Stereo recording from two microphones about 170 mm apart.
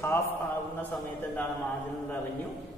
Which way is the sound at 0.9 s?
10° left (ahead or behind).